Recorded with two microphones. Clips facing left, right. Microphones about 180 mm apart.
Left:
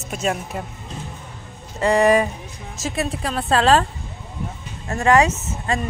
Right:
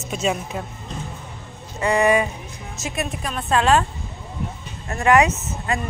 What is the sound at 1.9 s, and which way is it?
A woman's voice, 40° left (ahead or behind).